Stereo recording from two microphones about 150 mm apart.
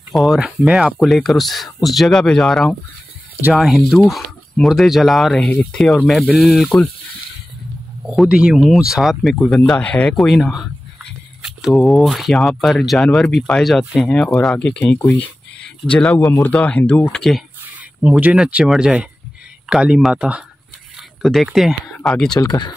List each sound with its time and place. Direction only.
0.1 s speech: centre (ahead or behind)
8.1 s speech: 5° right (ahead or behind)
18.0 s speech: 10° right (ahead or behind)
22.3 s speech: 25° left (ahead or behind)